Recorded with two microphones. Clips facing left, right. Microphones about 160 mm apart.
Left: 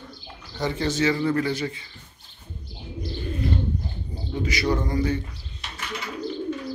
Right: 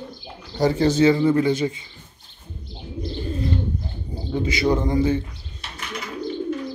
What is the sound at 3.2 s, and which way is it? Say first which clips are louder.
Bird: right 2 dB; 30° right (ahead or behind).